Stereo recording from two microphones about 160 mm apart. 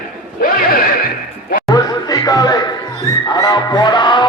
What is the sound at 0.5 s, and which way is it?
Neigh, 65° left (ahead or behind).